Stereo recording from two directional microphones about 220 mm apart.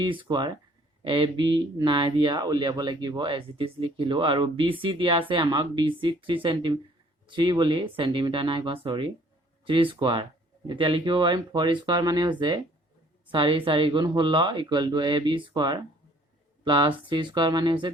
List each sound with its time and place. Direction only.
0.0 s speech: 20° right (ahead or behind)